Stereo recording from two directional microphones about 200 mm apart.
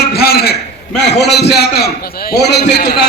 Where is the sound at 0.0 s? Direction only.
50° left (ahead or behind).